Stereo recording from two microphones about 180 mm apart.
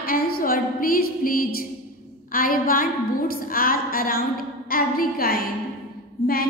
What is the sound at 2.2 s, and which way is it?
A woman's voice, 50° left (ahead or behind).